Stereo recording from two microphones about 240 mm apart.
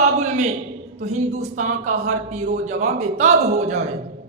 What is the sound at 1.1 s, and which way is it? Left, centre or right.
A woman's voice, right.